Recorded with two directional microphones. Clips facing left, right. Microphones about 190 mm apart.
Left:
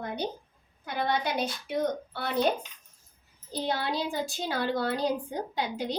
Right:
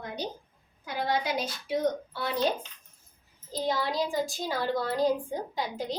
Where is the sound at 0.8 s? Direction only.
60° left (ahead or behind).